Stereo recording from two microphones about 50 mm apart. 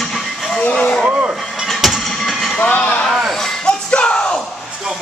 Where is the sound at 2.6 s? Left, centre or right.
Left.